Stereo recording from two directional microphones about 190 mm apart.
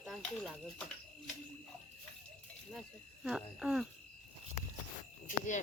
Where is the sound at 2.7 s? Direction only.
Centre (ahead or behind).